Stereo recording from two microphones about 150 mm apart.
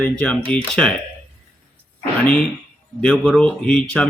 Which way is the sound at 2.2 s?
5° left (ahead or behind).